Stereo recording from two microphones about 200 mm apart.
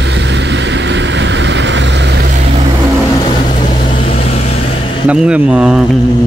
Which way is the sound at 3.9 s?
30° left (ahead or behind).